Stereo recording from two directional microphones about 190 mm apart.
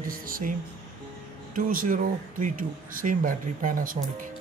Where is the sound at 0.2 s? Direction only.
45° right (ahead or behind).